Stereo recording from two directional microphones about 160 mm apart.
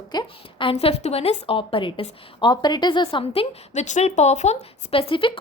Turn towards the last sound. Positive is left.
turn(degrees=35)  # may be behind; listen again after turning